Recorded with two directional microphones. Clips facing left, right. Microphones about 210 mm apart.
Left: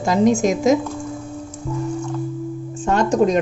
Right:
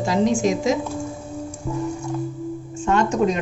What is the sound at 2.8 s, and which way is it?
Speech, 40° left (ahead or behind).